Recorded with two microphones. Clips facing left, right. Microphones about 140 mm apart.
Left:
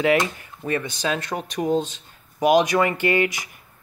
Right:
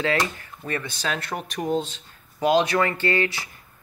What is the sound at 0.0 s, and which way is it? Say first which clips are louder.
Speech: left 4 dB; 15° left (ahead or behind).